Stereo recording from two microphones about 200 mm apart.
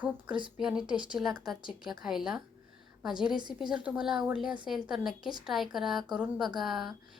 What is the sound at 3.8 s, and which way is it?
A woman's voice, 5° right (ahead or behind).